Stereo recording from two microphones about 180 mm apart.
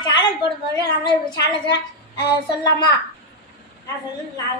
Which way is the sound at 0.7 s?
25° left (ahead or behind).